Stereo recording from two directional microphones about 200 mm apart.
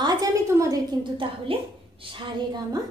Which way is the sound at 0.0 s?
20° right (ahead or behind).